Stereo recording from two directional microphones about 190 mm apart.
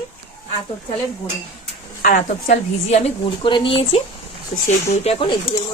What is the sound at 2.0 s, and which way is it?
A woman's voice, 45° left (ahead or behind).